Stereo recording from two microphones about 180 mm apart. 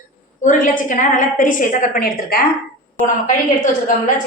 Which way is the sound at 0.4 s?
45° left (ahead or behind).